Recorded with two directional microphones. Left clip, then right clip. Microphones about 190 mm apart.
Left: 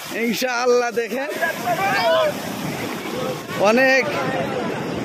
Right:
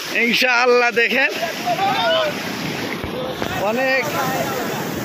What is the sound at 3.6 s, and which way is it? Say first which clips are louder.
Speech: left 4 dB; 50° left (ahead or behind).